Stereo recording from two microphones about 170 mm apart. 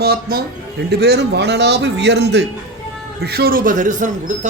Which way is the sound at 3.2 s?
65° right (ahead or behind).